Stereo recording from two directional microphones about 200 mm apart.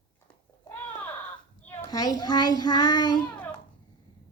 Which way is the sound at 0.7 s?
10° left (ahead or behind).